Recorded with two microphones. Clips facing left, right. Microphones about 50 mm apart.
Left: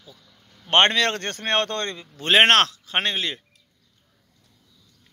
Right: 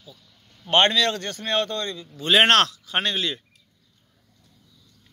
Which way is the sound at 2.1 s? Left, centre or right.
Left.